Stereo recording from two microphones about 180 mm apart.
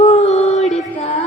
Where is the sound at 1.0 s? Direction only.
35° left (ahead or behind).